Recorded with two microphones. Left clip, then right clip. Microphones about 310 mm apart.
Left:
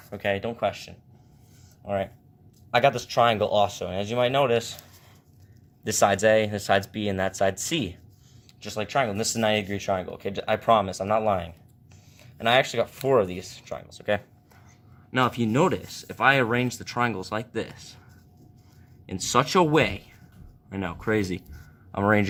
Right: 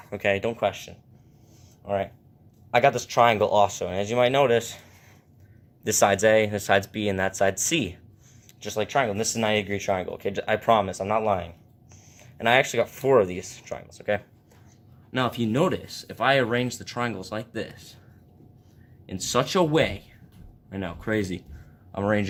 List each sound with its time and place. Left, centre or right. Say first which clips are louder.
0.1 s speech: right 3 dB; centre
1.8 s speech: right 1 dB; left
12.2 s speech: right 1 dB; centre
19.0 s speech: left 2 dB; centre